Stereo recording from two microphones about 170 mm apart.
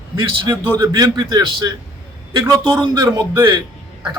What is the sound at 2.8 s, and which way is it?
Speech, 25° right (ahead or behind).